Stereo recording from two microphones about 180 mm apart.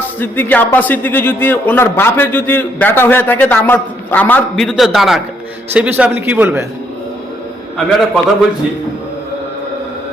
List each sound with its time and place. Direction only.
0.2 s a man's voice: 10° left (ahead or behind); by 6.7 s 10° right (ahead or behind)
7.9 s a man's voice: centre (ahead or behind)